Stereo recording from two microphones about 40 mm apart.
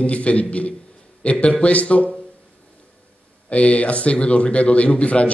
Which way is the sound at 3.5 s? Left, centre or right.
Left.